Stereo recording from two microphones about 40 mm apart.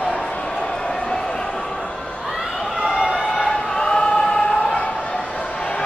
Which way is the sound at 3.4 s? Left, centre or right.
Centre.